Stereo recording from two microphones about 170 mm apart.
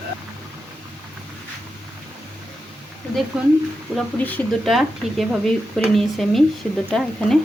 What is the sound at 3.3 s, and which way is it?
Speech, 5° right (ahead or behind).